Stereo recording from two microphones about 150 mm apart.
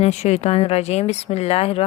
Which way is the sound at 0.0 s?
45° left (ahead or behind).